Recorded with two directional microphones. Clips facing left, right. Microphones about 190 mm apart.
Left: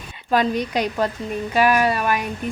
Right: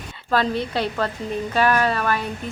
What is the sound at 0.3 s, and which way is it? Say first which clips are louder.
Speech: left 2 dB; 15° left (ahead or behind).